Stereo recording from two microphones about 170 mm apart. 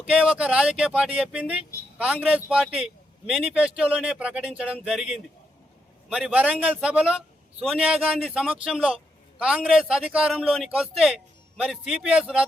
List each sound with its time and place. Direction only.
0.0 s a man's voice: 5° right (ahead or behind)